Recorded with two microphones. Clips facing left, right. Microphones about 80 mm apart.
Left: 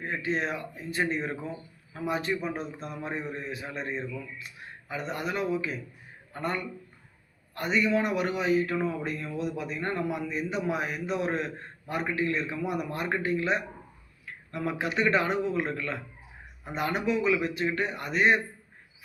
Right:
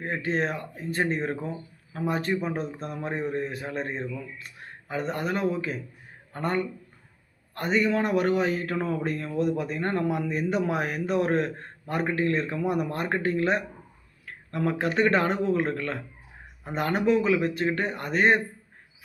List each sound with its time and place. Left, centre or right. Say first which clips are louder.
0.0 s a man's voice: right 3 dB; right